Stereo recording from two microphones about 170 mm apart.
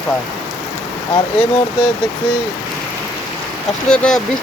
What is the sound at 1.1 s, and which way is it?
Speech, 30° left (ahead or behind).